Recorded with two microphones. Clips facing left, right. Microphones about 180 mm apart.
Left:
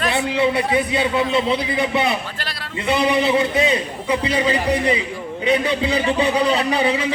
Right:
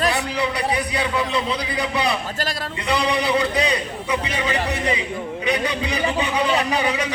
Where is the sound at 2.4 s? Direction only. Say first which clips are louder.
Right 5 dB; 45° right (ahead or behind).